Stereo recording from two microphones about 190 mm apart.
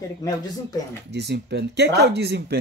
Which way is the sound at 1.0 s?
60° right (ahead or behind).